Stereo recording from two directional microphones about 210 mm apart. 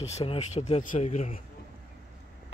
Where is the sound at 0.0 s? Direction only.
30° left (ahead or behind).